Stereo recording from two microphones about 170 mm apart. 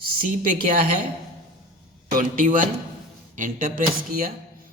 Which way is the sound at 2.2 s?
50° right (ahead or behind).